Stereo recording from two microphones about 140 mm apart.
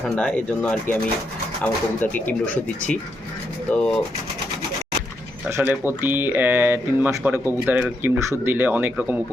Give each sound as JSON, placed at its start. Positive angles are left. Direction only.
{"t": 0.2, "sound": "speech", "side_deg": 5}
{"t": 5.5, "sound": "speech", "side_deg": -10}